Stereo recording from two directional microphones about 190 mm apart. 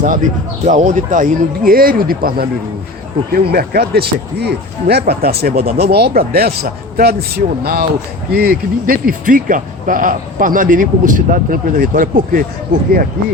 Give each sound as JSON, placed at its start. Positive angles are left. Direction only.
{"t": 0.0, "sound": "speech", "side_deg": -45}